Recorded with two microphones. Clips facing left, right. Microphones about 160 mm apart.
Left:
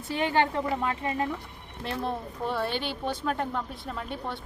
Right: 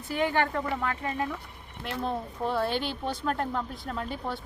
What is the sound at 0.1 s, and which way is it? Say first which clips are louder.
A woman's voice: left 1 dB; 25° left (ahead or behind).